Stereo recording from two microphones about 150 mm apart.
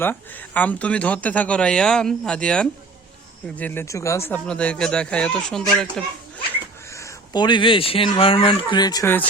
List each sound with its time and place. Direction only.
0.0 s speech: 15° left (ahead or behind)
4.4 s speech: 5° left (ahead or behind)
6.8 s speech: 20° left (ahead or behind)